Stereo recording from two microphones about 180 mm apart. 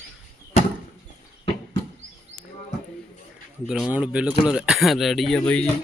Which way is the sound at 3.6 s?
Centre (ahead or behind).